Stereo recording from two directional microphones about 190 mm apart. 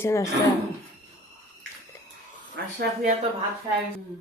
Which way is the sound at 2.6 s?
60° right (ahead or behind).